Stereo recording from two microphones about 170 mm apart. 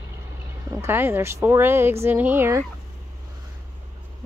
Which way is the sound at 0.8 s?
15° right (ahead or behind).